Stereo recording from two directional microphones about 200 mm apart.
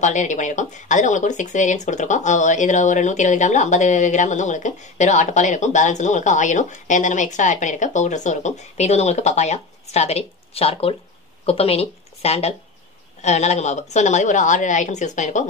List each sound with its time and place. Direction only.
0.0 s a woman's voice: 35° left (ahead or behind)